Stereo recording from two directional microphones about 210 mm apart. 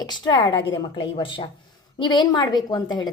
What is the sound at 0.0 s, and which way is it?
A woman's voice, 20° left (ahead or behind).